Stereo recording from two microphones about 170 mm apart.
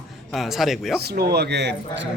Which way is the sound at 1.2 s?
70° right (ahead or behind).